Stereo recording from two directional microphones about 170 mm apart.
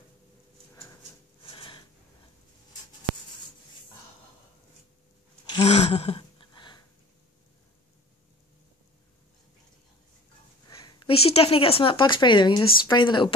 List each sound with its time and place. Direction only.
1.4 s a sound: 30° left (ahead or behind)
5.6 s gasp: 40° left (ahead or behind)
10.8 s a woman's voice: 25° left (ahead or behind)